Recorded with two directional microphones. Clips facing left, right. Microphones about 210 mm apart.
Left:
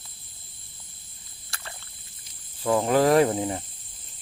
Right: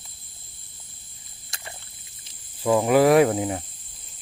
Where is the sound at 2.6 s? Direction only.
10° right (ahead or behind).